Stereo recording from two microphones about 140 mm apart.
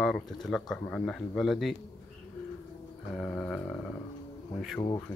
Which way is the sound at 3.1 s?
10° left (ahead or behind).